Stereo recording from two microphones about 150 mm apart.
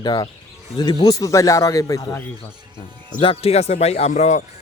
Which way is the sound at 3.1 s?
35° left (ahead or behind).